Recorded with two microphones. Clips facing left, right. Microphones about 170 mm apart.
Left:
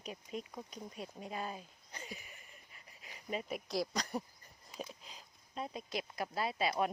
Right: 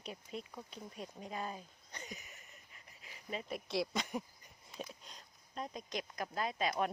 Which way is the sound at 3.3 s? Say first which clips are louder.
Left 1 dB; 5° left (ahead or behind).